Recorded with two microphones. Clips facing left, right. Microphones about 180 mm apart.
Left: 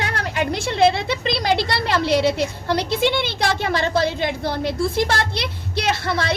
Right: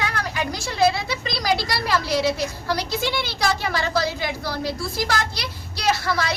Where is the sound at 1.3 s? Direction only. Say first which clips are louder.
Left 3 dB; 25° left (ahead or behind).